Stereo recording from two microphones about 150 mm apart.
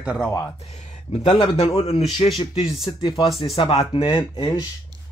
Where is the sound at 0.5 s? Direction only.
50° left (ahead or behind); by 4.6 s 30° left (ahead or behind).